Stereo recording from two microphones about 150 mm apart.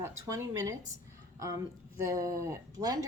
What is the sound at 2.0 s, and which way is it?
A woman's voice, 20° right (ahead or behind).